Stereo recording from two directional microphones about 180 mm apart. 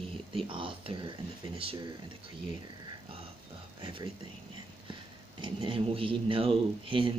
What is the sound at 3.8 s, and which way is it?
Speech, 25° right (ahead or behind).